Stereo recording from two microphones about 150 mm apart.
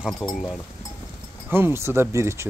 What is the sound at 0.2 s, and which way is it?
Speech, centre (ahead or behind).